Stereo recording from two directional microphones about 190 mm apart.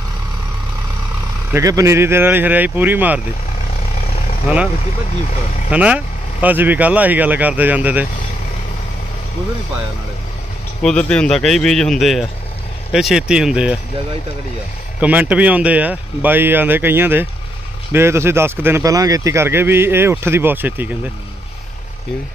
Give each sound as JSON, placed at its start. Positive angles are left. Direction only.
{"t": 1.5, "sound": "speech", "side_deg": -15}
{"t": 5.7, "sound": "speech", "side_deg": -5}
{"t": 10.8, "sound": "speech", "side_deg": 5}
{"t": 15.0, "sound": "speech", "side_deg": -10}